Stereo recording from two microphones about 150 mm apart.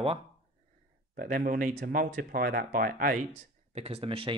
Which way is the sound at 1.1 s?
70° right (ahead or behind).